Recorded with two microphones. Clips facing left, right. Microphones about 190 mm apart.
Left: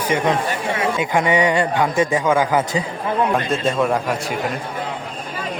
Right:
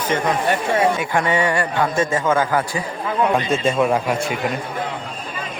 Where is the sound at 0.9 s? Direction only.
15° left (ahead or behind).